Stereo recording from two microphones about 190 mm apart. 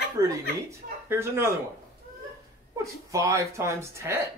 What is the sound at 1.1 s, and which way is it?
Speech, 15° right (ahead or behind).